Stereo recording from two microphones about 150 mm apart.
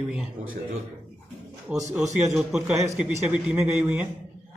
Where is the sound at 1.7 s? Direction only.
20° right (ahead or behind).